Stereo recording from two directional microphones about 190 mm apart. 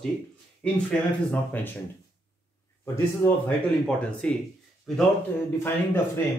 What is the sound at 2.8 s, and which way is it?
Speech, 15° left (ahead or behind).